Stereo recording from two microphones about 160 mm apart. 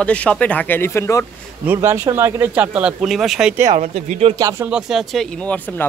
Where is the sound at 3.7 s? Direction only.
45° right (ahead or behind).